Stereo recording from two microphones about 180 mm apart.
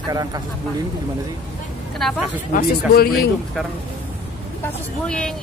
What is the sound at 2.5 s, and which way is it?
Speech, 50° left (ahead or behind).